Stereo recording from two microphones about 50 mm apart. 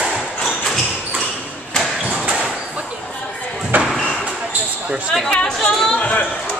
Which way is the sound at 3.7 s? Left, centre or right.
Right.